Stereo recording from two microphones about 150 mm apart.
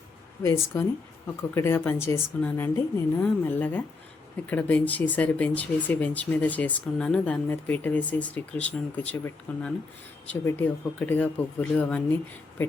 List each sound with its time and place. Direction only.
0.4 s speech: 20° left (ahead or behind)